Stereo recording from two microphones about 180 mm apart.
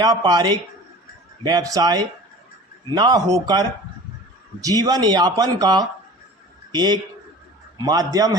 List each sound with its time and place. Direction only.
0.0 s a man's voice: 20° right (ahead or behind)